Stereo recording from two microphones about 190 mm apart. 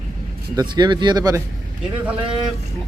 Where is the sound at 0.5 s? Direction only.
20° right (ahead or behind).